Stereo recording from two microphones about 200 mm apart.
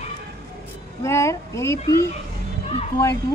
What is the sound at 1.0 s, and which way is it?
Speech, 15° left (ahead or behind).